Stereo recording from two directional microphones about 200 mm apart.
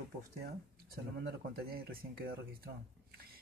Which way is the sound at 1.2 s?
50° right (ahead or behind).